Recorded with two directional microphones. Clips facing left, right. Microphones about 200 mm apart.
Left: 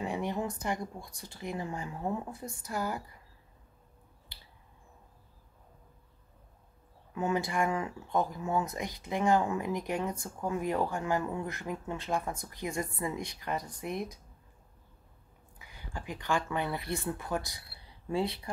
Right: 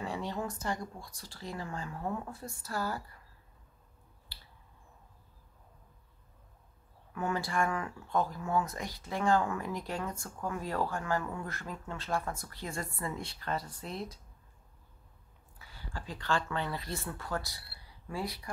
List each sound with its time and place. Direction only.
0.0 s speech: 20° left (ahead or behind)
4.3 s finger snapping: 20° left (ahead or behind)
7.1 s speech: 20° left (ahead or behind)
15.6 s speech: 15° left (ahead or behind)